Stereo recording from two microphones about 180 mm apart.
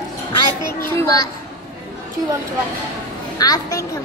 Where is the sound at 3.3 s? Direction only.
20° left (ahead or behind).